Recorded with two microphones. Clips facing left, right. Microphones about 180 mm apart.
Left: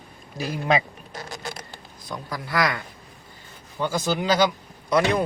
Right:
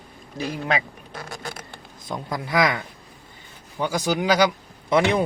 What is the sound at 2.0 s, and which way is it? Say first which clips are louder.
Speech: right 4 dB; 20° right (ahead or behind).